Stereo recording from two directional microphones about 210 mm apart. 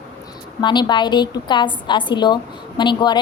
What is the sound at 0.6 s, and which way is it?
A woman's voice, 20° left (ahead or behind).